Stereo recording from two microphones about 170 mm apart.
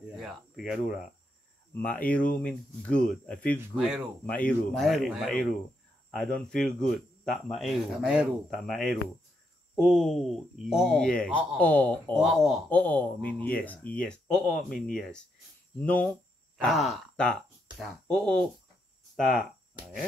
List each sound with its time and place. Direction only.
0.1 s speech: centre (ahead or behind)
1.7 s speech: 10° left (ahead or behind)
9.9 s speech: centre (ahead or behind)
12.2 s speech: centre (ahead or behind)
12.6 s speech: 10° left (ahead or behind)